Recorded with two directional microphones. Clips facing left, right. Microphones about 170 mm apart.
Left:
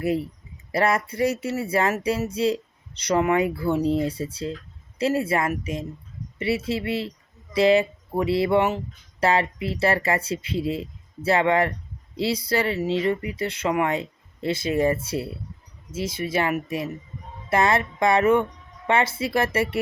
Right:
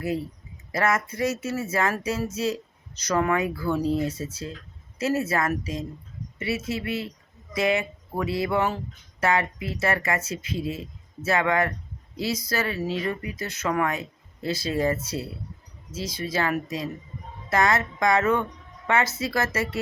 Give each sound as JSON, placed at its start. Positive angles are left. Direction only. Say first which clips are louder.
{"t": 0.7, "sound": "speech", "louder": "left 2 dB", "side_deg": 30}